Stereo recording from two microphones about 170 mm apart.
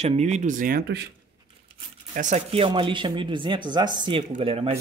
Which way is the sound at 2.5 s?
30° right (ahead or behind).